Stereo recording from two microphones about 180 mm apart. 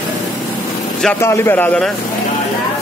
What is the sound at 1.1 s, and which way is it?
Speech, 15° left (ahead or behind).